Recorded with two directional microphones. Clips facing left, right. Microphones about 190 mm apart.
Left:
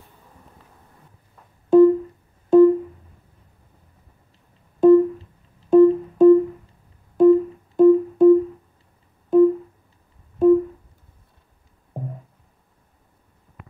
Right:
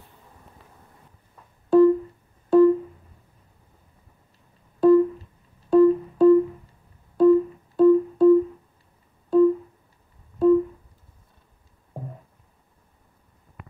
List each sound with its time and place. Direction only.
1.7 s music: 20° left (ahead or behind)
4.7 s music: 20° left (ahead or behind)
9.3 s a sound: 20° left (ahead or behind)
10.4 s music: 20° left (ahead or behind)